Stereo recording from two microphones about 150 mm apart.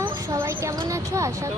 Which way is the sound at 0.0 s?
15° right (ahead or behind).